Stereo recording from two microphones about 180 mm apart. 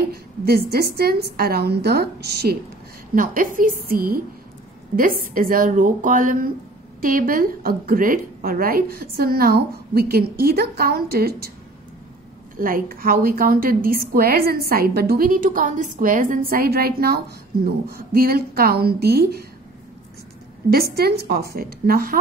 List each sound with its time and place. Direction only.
0.1 s a woman's voice: 60° right (ahead or behind)
3.2 s a woman's voice: 50° right (ahead or behind)
12.5 s a woman's voice: 50° right (ahead or behind)
20.7 s a woman's voice: 60° right (ahead or behind)